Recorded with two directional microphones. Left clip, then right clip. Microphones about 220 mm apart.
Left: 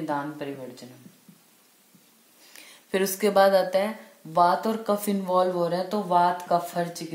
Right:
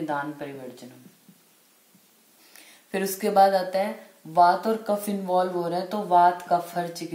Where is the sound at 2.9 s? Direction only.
35° left (ahead or behind).